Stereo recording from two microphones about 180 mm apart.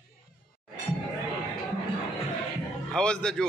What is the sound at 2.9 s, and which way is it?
Speech, 5° left (ahead or behind).